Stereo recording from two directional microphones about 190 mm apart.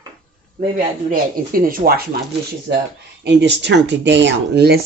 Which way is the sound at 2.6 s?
60° right (ahead or behind).